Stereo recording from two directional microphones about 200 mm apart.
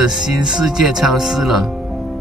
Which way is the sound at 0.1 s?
5° right (ahead or behind).